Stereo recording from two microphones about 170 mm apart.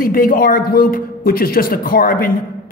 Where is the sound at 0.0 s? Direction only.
55° left (ahead or behind).